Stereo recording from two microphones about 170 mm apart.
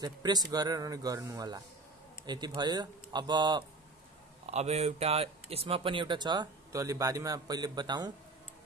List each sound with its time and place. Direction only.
0.0 s speech: 25° right (ahead or behind)
4.5 s speech: 40° right (ahead or behind); by 8.1 s 25° right (ahead or behind)